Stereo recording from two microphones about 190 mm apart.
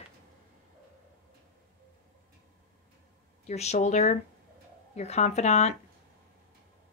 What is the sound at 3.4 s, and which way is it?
Speech, 35° left (ahead or behind).